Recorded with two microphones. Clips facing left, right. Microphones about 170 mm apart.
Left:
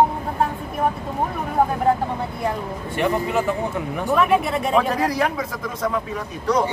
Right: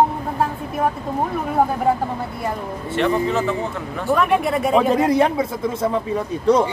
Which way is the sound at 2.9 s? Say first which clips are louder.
Right 2 dB; 10° left (ahead or behind).